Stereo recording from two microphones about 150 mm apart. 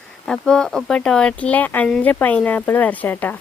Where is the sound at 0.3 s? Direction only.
5° left (ahead or behind).